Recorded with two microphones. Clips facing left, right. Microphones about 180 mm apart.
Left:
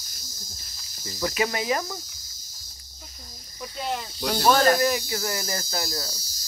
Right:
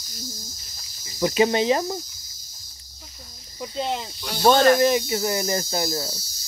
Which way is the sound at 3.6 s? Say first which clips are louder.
Right 4 dB; 20° right (ahead or behind).